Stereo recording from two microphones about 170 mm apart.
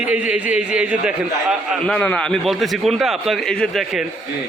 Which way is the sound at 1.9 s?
5° left (ahead or behind).